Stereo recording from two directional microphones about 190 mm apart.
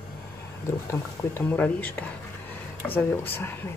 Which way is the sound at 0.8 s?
10° left (ahead or behind).